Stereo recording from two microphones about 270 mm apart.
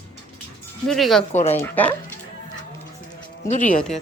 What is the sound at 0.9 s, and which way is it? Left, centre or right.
Speech, centre.